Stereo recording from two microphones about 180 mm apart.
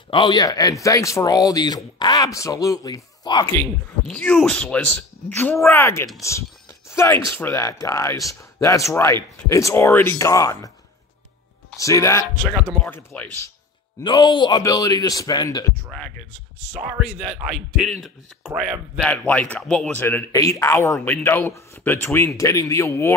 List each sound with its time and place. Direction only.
0.1 s speech: 25° left (ahead or behind)
4.1 s speech: 5° left (ahead or behind)
6.9 s a sound: 15° left (ahead or behind)
7.2 s speech: 15° left (ahead or behind)
11.8 s speech: 15° left (ahead or behind)
14.0 s speech: 25° left (ahead or behind)
15.9 s speech: 5° left (ahead or behind)
19.0 s speech: 10° left (ahead or behind)